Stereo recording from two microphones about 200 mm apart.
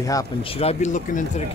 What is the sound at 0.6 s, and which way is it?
Speech, 35° left (ahead or behind).